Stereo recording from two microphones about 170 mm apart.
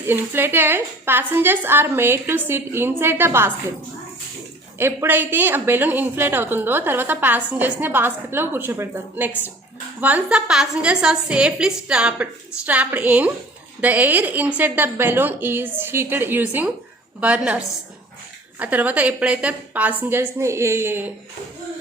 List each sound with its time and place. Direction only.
0.1 s a woman's voice: 10° right (ahead or behind)
4.8 s a woman's voice: 15° right (ahead or behind)
18.6 s a woman's voice: 10° right (ahead or behind)